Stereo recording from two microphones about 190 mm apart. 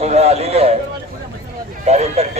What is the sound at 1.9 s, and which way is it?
Speech, 35° right (ahead or behind).